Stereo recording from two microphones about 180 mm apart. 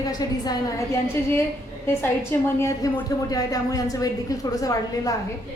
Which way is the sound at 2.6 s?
15° left (ahead or behind).